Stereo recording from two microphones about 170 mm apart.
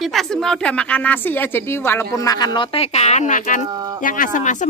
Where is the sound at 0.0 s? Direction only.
Centre (ahead or behind); by 3.6 s 50° left (ahead or behind).